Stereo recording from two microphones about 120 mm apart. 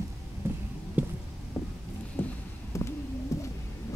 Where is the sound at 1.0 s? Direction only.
15° right (ahead or behind).